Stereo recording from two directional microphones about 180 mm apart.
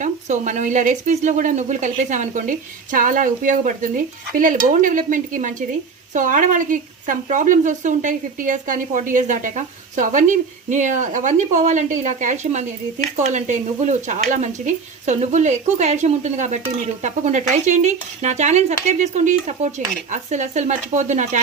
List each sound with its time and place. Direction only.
0.0 s speech: 45° right (ahead or behind)